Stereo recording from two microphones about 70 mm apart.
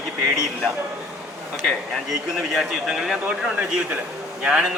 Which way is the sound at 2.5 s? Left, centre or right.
Centre.